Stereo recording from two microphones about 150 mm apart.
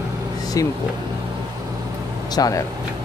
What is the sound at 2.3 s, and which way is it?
Speech, 25° left (ahead or behind).